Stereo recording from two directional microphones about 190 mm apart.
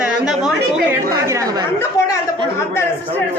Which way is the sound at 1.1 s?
15° right (ahead or behind).